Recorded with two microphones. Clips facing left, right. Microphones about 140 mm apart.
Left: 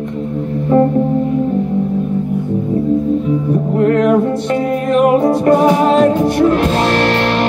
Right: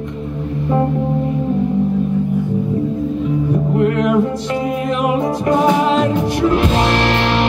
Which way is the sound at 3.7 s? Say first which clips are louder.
Left 4 dB; 45° left (ahead or behind).